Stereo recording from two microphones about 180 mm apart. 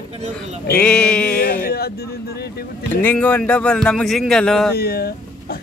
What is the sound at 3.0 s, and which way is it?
Speech, 10° left (ahead or behind).